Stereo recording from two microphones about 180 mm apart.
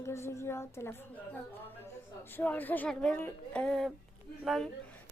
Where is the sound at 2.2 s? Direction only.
10° left (ahead or behind).